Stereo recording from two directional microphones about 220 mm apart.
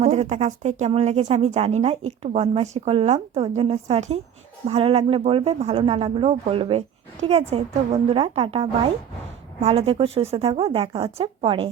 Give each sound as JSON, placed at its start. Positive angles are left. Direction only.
{"t": 0.0, "sound": "speech", "side_deg": -30}
{"t": 9.6, "sound": "speech", "side_deg": -25}